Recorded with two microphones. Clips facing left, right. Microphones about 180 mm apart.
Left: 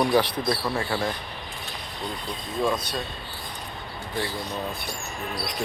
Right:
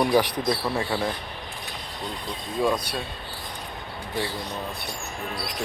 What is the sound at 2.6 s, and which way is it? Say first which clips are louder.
Speech: right 1 dB; 10° right (ahead or behind).